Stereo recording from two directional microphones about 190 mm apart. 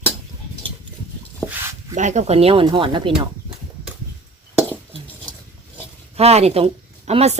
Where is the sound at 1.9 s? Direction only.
40° right (ahead or behind).